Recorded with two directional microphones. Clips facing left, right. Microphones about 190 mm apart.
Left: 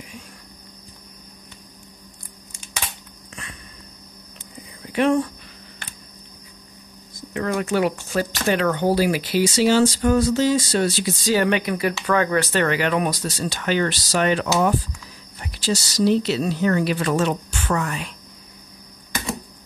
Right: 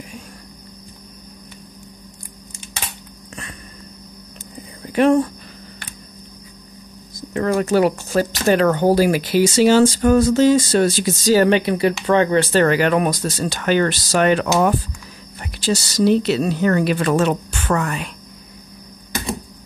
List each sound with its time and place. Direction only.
4.9 s speech: 40° right (ahead or behind)
7.2 s speech: 40° right (ahead or behind)
12.6 s a woman's voice: 45° right (ahead or behind)